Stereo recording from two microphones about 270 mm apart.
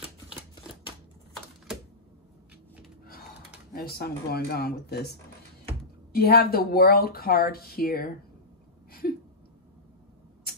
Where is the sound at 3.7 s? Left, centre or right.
Left.